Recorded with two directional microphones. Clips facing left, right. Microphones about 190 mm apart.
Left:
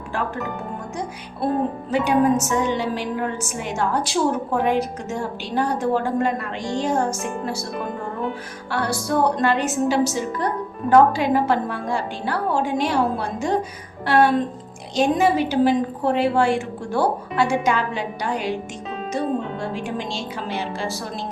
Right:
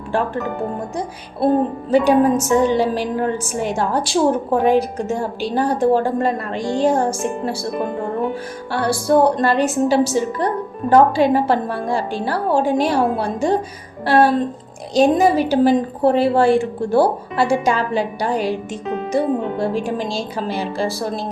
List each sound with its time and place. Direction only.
1.9 s a woman's voice: 35° right (ahead or behind)
8.7 s a woman's voice: 30° right (ahead or behind)